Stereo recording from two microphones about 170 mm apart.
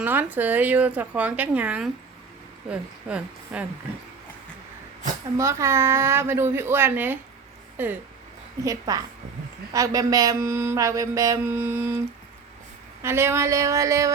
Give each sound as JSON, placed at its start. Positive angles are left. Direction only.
{"t": 0.0, "sound": "mantra", "side_deg": -10}
{"t": 5.4, "sound": "mantra", "side_deg": -15}
{"t": 8.6, "sound": "a woman's voice", "side_deg": -20}
{"t": 9.7, "sound": "mantra", "side_deg": -20}